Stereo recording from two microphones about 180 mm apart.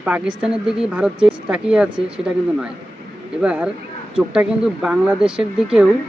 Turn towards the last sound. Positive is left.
turn(degrees=-5)  # may be behind; listen again after turning